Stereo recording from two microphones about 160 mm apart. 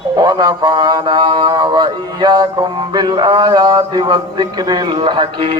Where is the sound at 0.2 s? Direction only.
25° right (ahead or behind).